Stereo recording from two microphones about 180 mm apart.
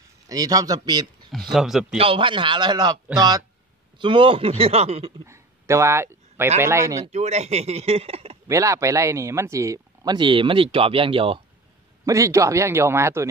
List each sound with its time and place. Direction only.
0.3 s speech: 20° right (ahead or behind)
1.3 s speech: centre (ahead or behind)
2.0 s speech: 30° right (ahead or behind)
5.2 s a sound: 15° right (ahead or behind)
6.6 s speech: 15° right (ahead or behind)
7.1 s speech: 40° right (ahead or behind)
8.5 s speech: 15° right (ahead or behind)
12.1 s speech: 15° right (ahead or behind)